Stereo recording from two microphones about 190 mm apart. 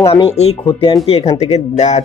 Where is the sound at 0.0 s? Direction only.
30° left (ahead or behind).